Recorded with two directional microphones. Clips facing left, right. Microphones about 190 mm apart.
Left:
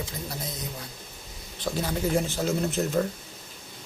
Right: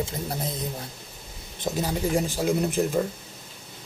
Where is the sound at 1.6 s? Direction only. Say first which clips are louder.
Right 2 dB; 15° right (ahead or behind).